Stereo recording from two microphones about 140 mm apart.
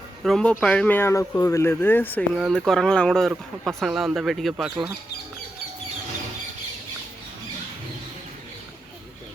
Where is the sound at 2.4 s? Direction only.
Centre (ahead or behind).